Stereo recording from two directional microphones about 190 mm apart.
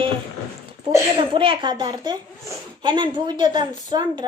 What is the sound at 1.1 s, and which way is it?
Speech, 25° right (ahead or behind).